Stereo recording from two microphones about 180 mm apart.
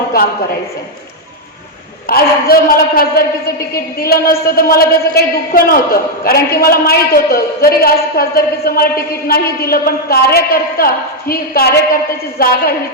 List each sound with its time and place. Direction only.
2.0 s a man's voice: 55° left (ahead or behind)